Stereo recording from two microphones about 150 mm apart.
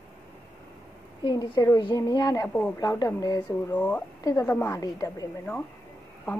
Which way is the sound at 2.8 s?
25° left (ahead or behind).